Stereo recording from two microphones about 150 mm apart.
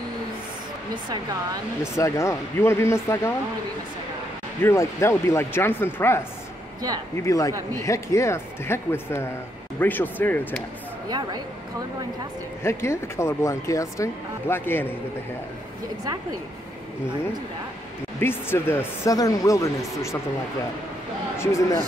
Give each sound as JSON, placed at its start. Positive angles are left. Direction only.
{"t": 2.0, "sound": "speech", "side_deg": 20}
{"t": 4.6, "sound": "speech", "side_deg": 20}
{"t": 11.1, "sound": "a woman's voice", "side_deg": -25}
{"t": 12.6, "sound": "speech", "side_deg": 20}
{"t": 18.2, "sound": "speech", "side_deg": 15}
{"t": 21.4, "sound": "a man's voice", "side_deg": 20}